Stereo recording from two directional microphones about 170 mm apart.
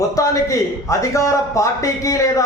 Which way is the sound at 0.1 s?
20° left (ahead or behind).